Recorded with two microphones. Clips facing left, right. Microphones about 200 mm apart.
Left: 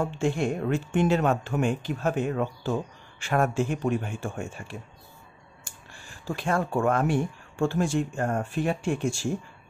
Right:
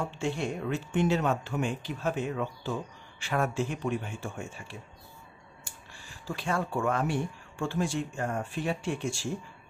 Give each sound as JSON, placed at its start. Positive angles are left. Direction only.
{"t": 0.0, "sound": "speech", "side_deg": 50}